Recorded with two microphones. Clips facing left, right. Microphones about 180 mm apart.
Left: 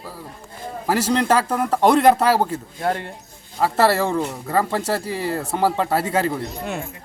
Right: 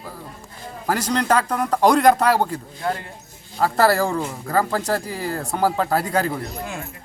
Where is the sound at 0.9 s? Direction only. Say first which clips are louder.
Left 2 dB; 5° left (ahead or behind).